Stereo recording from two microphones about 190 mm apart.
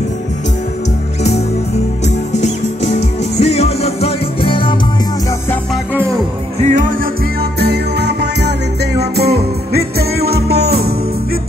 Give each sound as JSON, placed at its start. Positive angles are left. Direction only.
{"t": 2.0, "sound": "music", "side_deg": 35}
{"t": 6.6, "sound": "music", "side_deg": -40}
{"t": 7.5, "sound": "music", "side_deg": -60}